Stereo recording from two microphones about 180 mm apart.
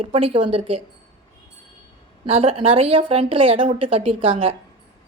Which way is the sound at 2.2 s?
30° right (ahead or behind).